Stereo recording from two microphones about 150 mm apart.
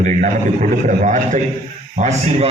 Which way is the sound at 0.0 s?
55° right (ahead or behind).